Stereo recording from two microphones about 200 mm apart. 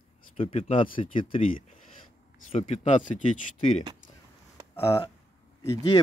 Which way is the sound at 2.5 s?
35° left (ahead or behind).